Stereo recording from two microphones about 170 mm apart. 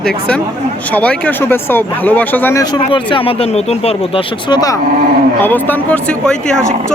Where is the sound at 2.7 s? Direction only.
30° left (ahead or behind).